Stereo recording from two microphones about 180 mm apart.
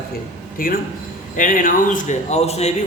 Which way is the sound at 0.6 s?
50° left (ahead or behind).